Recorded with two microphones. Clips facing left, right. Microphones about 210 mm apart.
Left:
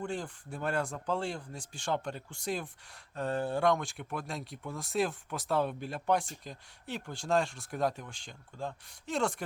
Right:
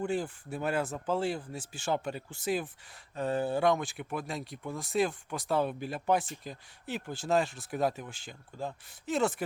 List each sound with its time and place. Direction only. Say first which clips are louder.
0.0 s speech: right 5 dB; 5° right (ahead or behind)